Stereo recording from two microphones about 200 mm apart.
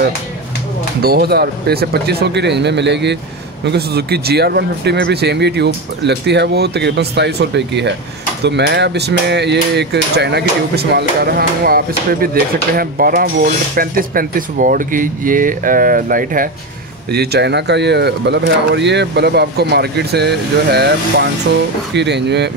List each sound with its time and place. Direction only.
1.0 s speech: 50° right (ahead or behind)